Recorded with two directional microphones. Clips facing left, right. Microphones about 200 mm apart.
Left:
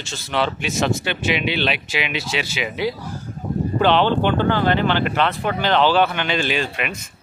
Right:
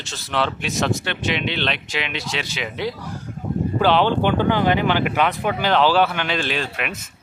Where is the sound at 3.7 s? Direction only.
5° right (ahead or behind).